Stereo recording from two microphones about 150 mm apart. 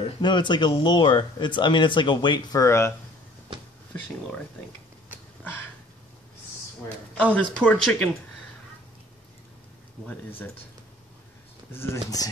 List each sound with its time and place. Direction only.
0.0 s speech: 30° left (ahead or behind)
2.6 s speech: 20° left (ahead or behind)
7.3 s speech: 10° left (ahead or behind)
10.0 s speech: 15° left (ahead or behind)
11.7 s speech: 15° left (ahead or behind)